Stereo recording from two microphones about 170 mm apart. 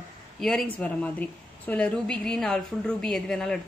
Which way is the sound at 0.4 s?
5° left (ahead or behind).